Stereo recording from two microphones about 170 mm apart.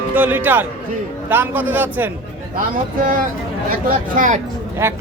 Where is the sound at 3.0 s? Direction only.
55° right (ahead or behind).